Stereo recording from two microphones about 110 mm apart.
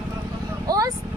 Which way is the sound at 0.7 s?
35° right (ahead or behind).